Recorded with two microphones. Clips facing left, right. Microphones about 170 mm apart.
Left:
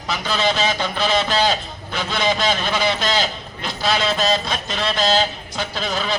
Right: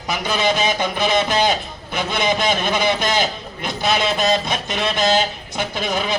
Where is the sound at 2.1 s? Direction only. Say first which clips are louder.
Even; 20° right (ahead or behind).